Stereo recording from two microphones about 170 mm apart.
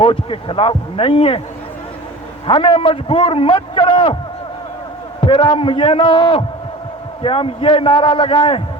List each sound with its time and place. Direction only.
0.0 s a man's voice: 30° left (ahead or behind)
2.5 s a man's voice: 30° left (ahead or behind)
5.2 s a man's voice: 30° left (ahead or behind)